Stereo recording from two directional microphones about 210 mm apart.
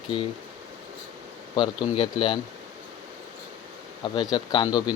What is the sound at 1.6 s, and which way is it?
Speech, 20° left (ahead or behind).